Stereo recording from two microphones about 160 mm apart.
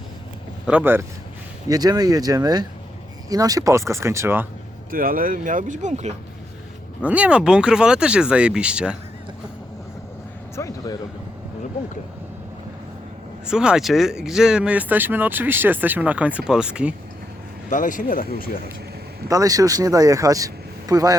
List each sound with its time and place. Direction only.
0.6 s speech: 10° right (ahead or behind)
1.6 s speech: 25° right (ahead or behind)
4.9 s speech: 65° right (ahead or behind); by 6.1 s 45° right (ahead or behind)
7.0 s speech: 10° right (ahead or behind)
10.5 s speech: 20° left (ahead or behind)
13.5 s speech: 5° right (ahead or behind)
17.7 s speech: 55° left (ahead or behind)
19.3 s speech: 20° right (ahead or behind)